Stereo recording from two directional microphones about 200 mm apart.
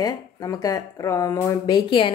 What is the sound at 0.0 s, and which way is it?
Speech, 20° left (ahead or behind).